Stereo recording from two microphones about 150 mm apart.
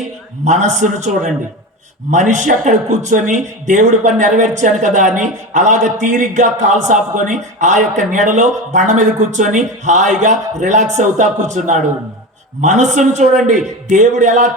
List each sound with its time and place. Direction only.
0.4 s a man's voice: 50° right (ahead or behind)